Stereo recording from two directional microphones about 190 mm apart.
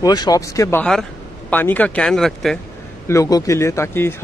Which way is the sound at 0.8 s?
5° left (ahead or behind).